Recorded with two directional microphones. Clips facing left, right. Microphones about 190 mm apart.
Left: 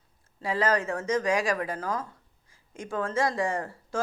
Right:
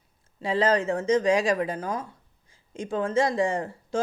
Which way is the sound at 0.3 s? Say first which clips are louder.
Right 3 dB; 25° right (ahead or behind).